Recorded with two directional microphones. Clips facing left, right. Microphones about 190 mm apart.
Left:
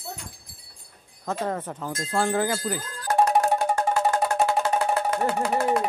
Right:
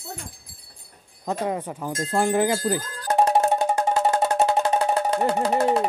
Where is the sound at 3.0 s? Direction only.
25° right (ahead or behind).